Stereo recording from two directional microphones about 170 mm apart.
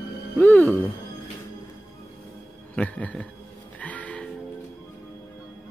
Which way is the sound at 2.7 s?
10° left (ahead or behind).